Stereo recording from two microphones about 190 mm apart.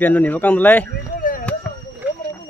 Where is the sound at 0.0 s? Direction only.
10° left (ahead or behind).